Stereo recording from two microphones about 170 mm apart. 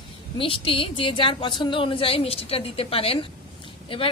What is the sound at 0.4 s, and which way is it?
A woman's voice, 30° left (ahead or behind).